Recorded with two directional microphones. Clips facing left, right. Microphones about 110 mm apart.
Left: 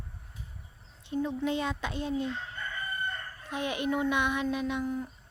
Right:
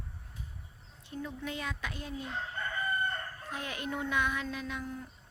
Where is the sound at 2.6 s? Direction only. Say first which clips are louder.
Right 2 dB; 45° right (ahead or behind).